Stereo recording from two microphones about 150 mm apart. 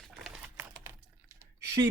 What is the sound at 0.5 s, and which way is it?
Typing, 20° right (ahead or behind).